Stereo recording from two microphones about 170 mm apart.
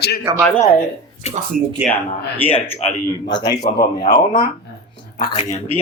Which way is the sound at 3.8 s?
60° left (ahead or behind).